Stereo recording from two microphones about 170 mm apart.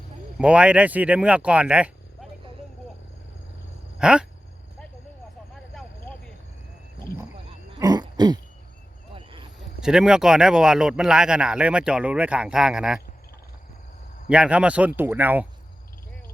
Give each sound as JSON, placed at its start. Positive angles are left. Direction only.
{"t": 0.3, "sound": "speech", "side_deg": -5}
{"t": 3.9, "sound": "a sound", "side_deg": -5}
{"t": 5.7, "sound": "vehicle", "side_deg": 5}
{"t": 7.8, "sound": "throat clearing", "side_deg": -20}
{"t": 9.1, "sound": "vehicle", "side_deg": -30}
{"t": 9.8, "sound": "speech", "side_deg": -5}
{"t": 14.3, "sound": "speech", "side_deg": -5}